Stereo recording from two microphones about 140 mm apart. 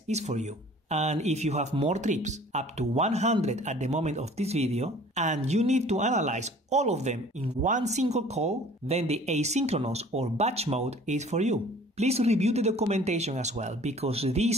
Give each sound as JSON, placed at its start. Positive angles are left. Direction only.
{"t": 0.1, "sound": "speech", "side_deg": -55}